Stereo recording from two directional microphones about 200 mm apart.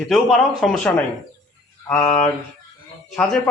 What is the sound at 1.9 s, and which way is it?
Mantra, 5° left (ahead or behind).